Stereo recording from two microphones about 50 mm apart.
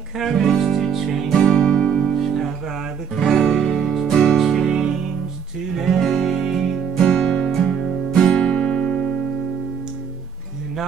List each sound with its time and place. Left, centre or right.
0.2 s music: centre
1.3 s music: centre
2.1 s music: centre
3.2 s music: centre
7.0 s music: centre
8.2 s guitar: left
8.5 s music: centre